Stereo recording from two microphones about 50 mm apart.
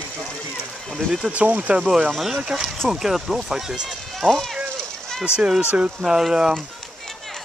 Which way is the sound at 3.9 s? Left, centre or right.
Centre.